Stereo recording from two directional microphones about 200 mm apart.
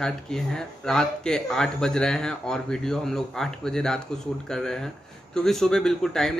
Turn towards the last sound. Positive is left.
turn(degrees=0)  # may be behind; listen again after turning